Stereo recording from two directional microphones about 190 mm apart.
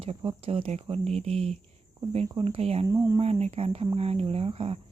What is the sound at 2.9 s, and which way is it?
Speech, 20° right (ahead or behind).